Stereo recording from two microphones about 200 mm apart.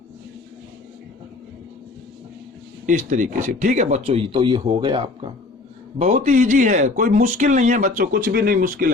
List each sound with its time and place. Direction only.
2.8 s speech: 40° right (ahead or behind); by 5.0 s 20° right (ahead or behind)
6.0 s speech: 30° right (ahead or behind)